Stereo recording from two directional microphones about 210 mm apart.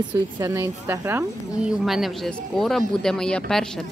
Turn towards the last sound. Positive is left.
turn(degrees=5)  # may be behind; listen again after turning